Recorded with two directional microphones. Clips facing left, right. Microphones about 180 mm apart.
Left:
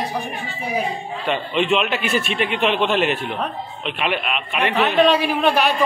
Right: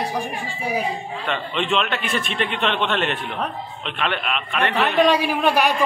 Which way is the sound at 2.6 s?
5° left (ahead or behind).